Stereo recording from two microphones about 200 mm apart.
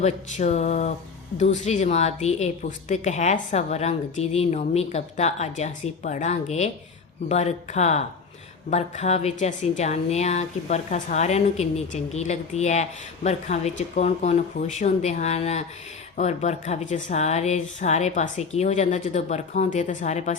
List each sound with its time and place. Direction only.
0.0 s a woman's voice: 35° left (ahead or behind)